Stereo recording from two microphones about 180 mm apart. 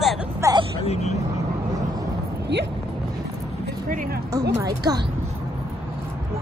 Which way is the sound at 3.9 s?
50° right (ahead or behind).